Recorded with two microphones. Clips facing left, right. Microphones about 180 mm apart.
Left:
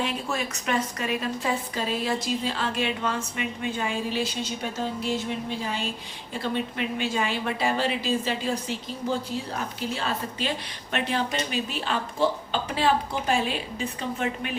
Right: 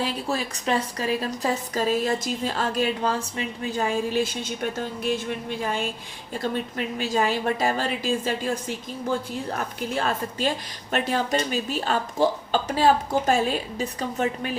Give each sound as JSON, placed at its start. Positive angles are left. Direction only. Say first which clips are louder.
{"t": 0.0, "sound": "a woman's voice", "louder": "right 2 dB", "side_deg": -35}
{"t": 6.4, "sound": "a woman's voice", "louder": "right 1 dB", "side_deg": -40}